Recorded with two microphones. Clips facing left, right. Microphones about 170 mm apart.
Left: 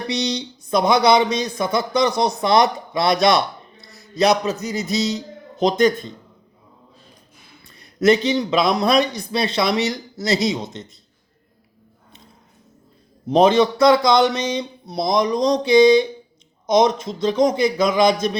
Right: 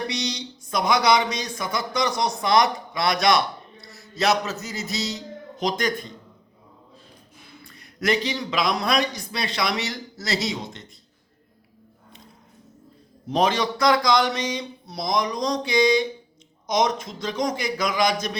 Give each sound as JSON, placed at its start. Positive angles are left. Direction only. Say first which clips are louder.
{"t": 0.1, "sound": "a man's voice", "louder": "left 6 dB", "side_deg": 25}
{"t": 7.8, "sound": "a man's voice", "louder": "left 8 dB", "side_deg": 25}
{"t": 13.3, "sound": "a man's voice", "louder": "left 8 dB", "side_deg": 25}